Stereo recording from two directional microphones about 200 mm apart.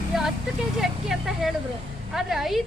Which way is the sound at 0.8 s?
Centre (ahead or behind).